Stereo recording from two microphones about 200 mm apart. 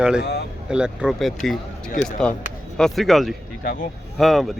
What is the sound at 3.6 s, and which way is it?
Speech, 45° left (ahead or behind).